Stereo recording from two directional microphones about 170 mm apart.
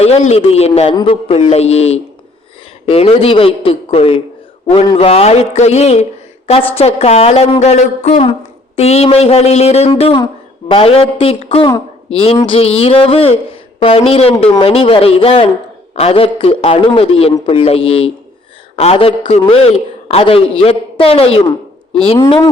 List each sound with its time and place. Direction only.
0.0 s a man's voice: 35° left (ahead or behind)